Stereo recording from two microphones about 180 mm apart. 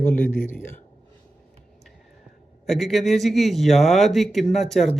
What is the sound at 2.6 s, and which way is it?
Speech, centre (ahead or behind).